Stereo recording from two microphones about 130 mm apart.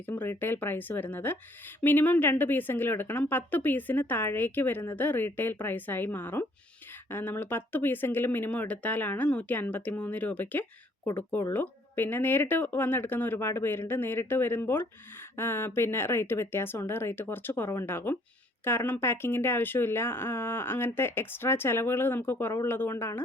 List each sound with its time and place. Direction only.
0.0 s speech: 15° left (ahead or behind)